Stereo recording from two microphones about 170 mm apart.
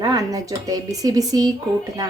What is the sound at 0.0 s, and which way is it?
A woman's voice, 20° right (ahead or behind).